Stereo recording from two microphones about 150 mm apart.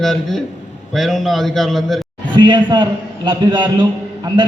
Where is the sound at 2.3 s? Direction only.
30° right (ahead or behind).